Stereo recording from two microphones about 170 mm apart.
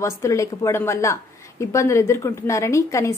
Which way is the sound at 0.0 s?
15° left (ahead or behind).